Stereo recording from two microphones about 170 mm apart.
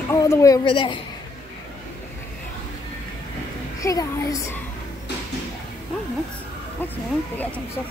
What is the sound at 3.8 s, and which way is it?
Speech, 20° left (ahead or behind).